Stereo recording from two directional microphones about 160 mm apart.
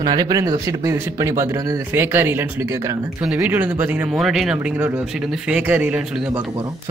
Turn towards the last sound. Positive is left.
turn(degrees=-10)  # may be behind; listen again after turning